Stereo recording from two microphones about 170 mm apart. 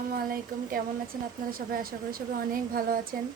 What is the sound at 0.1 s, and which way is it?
Speech, 60° right (ahead or behind).